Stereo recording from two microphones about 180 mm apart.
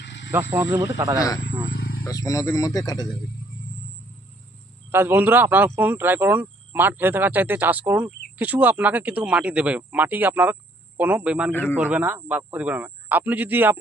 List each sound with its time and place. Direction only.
0.0 s wild animals: 90° left
0.5 s speech: 15° right (ahead or behind)
1.7 s a sound: 65° left (ahead or behind)
2.0 s speech: 20° left (ahead or behind)
4.9 s speech: 10° right (ahead or behind)
11.5 s a man's voice: 10° left (ahead or behind)
11.8 s speech: 10° right (ahead or behind)